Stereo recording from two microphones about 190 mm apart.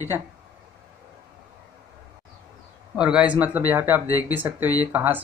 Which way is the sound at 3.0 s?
5° right (ahead or behind).